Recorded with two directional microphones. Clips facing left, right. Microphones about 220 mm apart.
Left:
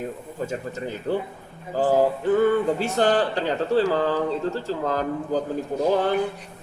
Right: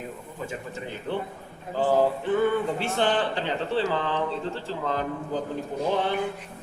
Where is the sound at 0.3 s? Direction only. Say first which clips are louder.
Left 5 dB; 40° left (ahead or behind).